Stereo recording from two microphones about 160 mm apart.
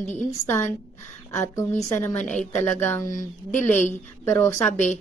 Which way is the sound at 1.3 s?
15° left (ahead or behind).